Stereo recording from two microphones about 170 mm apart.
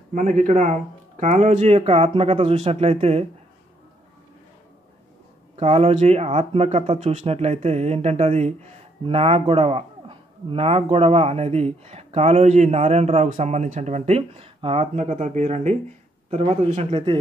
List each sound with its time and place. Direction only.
0.1 s a man's voice: 50° right (ahead or behind)
5.6 s a man's voice: 35° right (ahead or behind)